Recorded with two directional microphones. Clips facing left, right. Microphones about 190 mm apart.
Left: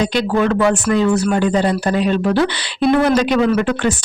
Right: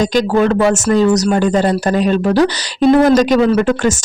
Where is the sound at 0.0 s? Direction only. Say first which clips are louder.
Right 3 dB; 40° right (ahead or behind).